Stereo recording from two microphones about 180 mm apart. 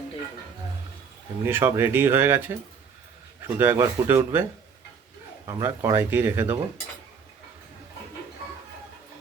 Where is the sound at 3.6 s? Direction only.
15° right (ahead or behind).